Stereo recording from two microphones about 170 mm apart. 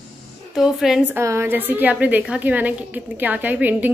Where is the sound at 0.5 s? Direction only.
Centre (ahead or behind).